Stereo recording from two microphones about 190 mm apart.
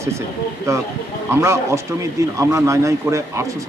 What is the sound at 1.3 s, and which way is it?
Speech, 15° right (ahead or behind).